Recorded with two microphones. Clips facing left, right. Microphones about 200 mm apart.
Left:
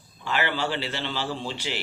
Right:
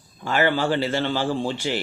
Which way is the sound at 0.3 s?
45° right (ahead or behind).